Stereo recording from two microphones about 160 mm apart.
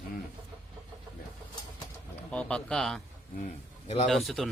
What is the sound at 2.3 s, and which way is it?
Speech, 5° left (ahead or behind).